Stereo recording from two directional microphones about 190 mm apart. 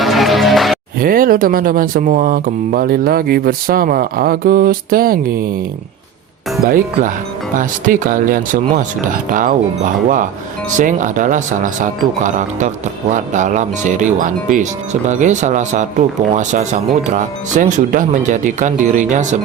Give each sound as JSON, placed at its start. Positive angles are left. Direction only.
{"t": 0.0, "sound": "music", "side_deg": 0}
{"t": 0.9, "sound": "speech", "side_deg": -50}
{"t": 6.6, "sound": "speech", "side_deg": -50}
{"t": 10.8, "sound": "speech", "side_deg": -40}